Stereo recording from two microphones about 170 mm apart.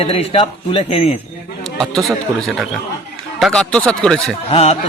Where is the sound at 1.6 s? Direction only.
Centre (ahead or behind).